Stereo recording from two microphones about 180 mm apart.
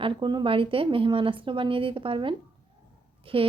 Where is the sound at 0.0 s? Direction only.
25° right (ahead or behind).